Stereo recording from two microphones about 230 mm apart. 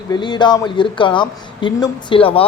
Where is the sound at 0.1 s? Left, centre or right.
Centre.